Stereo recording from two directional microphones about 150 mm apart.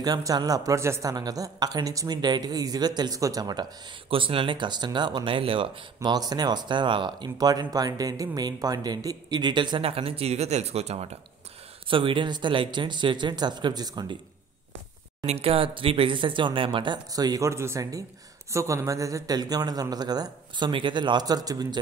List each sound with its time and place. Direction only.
0.0 s speech: 25° right (ahead or behind)
4.1 s speech: 35° right (ahead or behind)
15.2 s speech: 40° right (ahead or behind); by 21.7 s 25° right (ahead or behind)